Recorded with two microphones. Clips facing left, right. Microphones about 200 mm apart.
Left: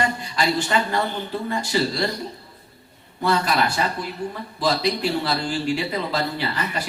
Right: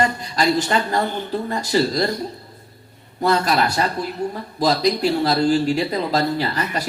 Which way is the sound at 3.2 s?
40° right (ahead or behind).